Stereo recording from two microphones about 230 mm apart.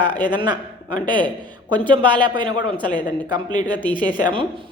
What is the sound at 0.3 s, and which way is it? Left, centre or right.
Speech, centre.